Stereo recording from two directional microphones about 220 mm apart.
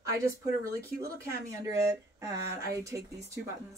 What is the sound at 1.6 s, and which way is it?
Speech, 15° right (ahead or behind).